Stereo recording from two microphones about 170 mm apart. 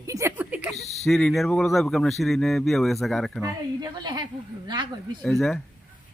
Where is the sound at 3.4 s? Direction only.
25° right (ahead or behind).